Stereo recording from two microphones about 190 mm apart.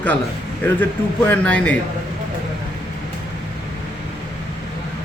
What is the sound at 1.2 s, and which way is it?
Speech, 5° left (ahead or behind).